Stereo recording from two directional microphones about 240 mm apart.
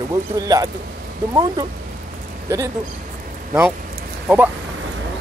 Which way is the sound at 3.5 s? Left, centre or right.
Centre.